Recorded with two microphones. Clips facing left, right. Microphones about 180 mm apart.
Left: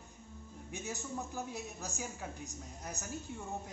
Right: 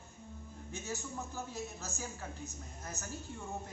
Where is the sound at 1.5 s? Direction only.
15° left (ahead or behind).